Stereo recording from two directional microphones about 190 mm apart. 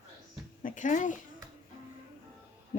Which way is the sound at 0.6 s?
45° left (ahead or behind).